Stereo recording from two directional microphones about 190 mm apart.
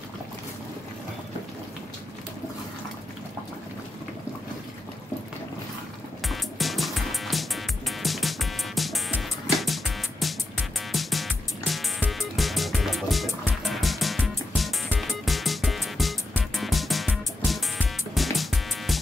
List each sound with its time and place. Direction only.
6.2 s music: centre (ahead or behind)